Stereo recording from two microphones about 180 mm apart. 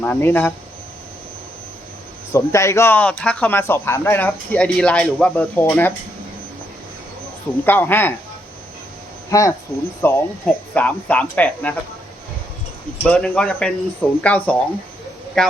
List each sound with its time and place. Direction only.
0.0 s speech: 10° left (ahead or behind)
2.3 s speech: 15° left (ahead or behind)
7.6 s speech: 10° left (ahead or behind)
9.3 s speech: 15° left (ahead or behind)
13.0 s speech: 5° left (ahead or behind)